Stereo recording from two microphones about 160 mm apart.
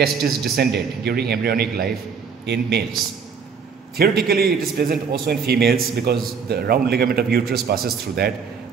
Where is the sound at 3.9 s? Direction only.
75° right (ahead or behind).